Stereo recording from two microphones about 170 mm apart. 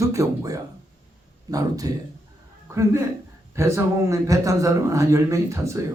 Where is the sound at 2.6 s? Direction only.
15° right (ahead or behind).